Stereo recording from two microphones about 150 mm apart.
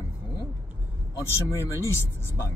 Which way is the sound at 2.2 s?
15° left (ahead or behind).